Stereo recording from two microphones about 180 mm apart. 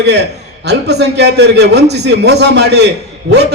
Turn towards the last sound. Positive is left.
turn(degrees=-70)  # may be behind; listen again after turning